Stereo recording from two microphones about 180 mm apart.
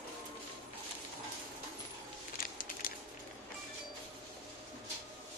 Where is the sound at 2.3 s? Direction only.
55° left (ahead or behind).